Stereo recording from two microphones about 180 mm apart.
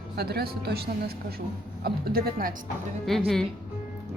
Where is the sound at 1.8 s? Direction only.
55° right (ahead or behind).